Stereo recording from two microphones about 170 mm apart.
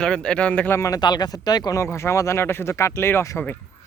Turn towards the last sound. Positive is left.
turn(degrees=15)  # may be behind; listen again after turning